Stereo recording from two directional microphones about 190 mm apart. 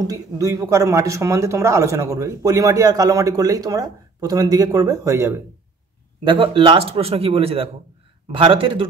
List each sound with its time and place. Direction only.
0.0 s speech: 20° right (ahead or behind)
6.2 s speech: 30° right (ahead or behind)